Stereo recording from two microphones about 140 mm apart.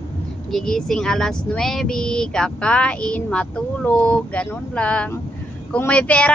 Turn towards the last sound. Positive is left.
turn(degrees=10)  # may be behind; listen again after turning